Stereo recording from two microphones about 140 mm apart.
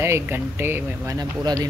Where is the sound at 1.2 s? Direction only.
30° right (ahead or behind).